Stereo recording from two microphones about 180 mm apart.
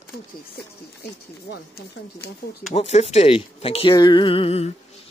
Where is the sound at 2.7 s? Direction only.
35° left (ahead or behind).